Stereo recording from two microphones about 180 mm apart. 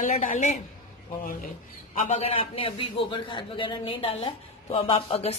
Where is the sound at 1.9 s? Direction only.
40° left (ahead or behind).